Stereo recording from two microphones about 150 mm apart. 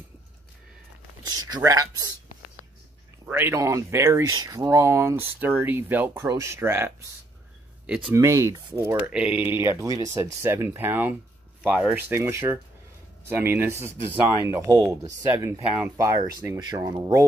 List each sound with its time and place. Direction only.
1.2 s speech: 20° right (ahead or behind)
3.3 s speech: 15° right (ahead or behind)
7.8 s a sound: 5° right (ahead or behind)
8.1 s speech: 20° right (ahead or behind)